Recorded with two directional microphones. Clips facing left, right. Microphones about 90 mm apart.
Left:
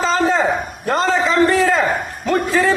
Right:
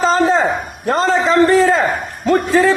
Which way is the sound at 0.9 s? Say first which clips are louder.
Right 3 dB; 35° right (ahead or behind).